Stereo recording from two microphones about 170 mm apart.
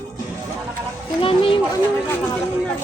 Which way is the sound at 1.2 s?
30° left (ahead or behind).